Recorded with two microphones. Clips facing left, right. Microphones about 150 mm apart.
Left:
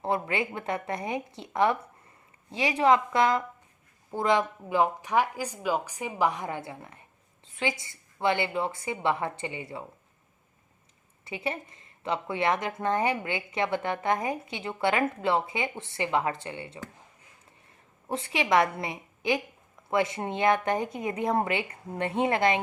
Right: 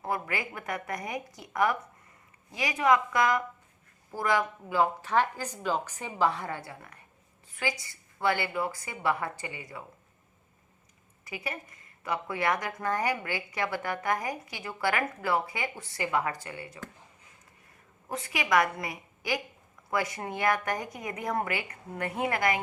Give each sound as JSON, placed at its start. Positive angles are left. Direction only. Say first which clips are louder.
{"t": 0.0, "sound": "a woman's voice", "louder": "left 4 dB", "side_deg": 25}
{"t": 11.3, "sound": "a woman's voice", "louder": "left 5 dB", "side_deg": 25}
{"t": 18.1, "sound": "a woman's voice", "louder": "left 2 dB", "side_deg": 25}